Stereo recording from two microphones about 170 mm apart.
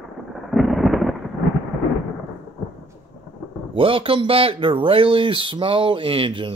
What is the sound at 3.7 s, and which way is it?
Speech, 30° right (ahead or behind).